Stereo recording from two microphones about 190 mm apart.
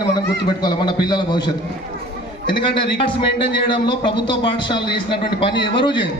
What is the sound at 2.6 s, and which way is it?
A man's voice, 25° left (ahead or behind).